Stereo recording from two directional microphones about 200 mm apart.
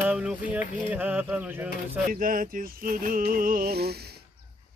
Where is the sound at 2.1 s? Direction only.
45° right (ahead or behind).